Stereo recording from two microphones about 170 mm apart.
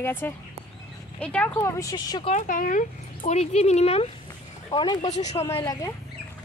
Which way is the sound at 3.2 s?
40° left (ahead or behind).